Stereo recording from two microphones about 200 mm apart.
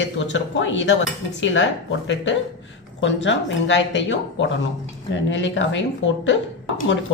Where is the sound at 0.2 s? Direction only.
70° left (ahead or behind).